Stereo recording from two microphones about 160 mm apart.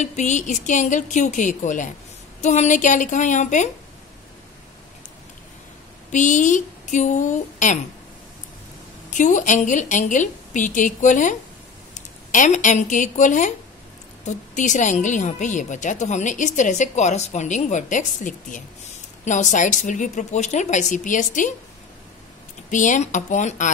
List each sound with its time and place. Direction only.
0.0 s a woman's voice: 50° left (ahead or behind)
6.1 s a woman's voice: 50° left (ahead or behind)
9.1 s a woman's voice: 50° left (ahead or behind)
22.7 s a woman's voice: 50° left (ahead or behind)